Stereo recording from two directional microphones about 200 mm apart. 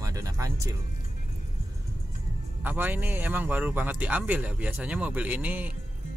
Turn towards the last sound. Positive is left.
turn(degrees=-10)  # may be behind; listen again after turning